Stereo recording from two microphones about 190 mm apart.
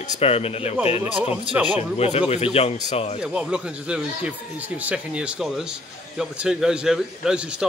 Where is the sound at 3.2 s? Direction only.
5° right (ahead or behind).